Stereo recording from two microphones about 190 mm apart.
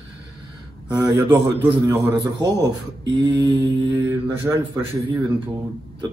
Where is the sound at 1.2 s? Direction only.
10° right (ahead or behind).